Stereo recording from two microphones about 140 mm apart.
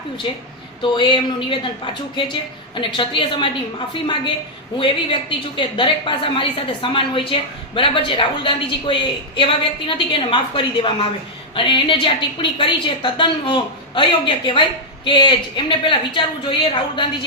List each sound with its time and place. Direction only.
0.8 s a woman's voice: 35° left (ahead or behind)
5.5 s a woman's voice: 35° left (ahead or behind)